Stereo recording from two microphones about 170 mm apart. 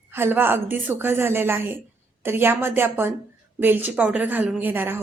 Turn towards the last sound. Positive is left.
turn(degrees=-10)  # may be behind; listen again after turning